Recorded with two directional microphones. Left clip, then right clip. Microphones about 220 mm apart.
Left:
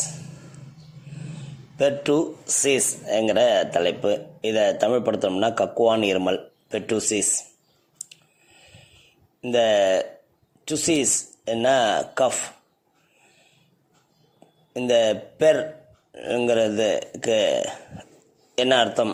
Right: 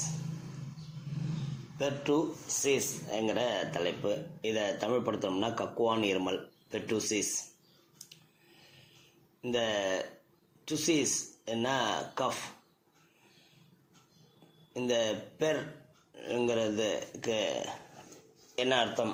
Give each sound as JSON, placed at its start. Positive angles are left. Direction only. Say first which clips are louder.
{"t": 1.8, "sound": "speech", "louder": "left 10 dB", "side_deg": 50}
{"t": 9.4, "sound": "speech", "louder": "left 13 dB", "side_deg": 45}
{"t": 14.7, "sound": "a man's voice", "louder": "left 11 dB", "side_deg": 45}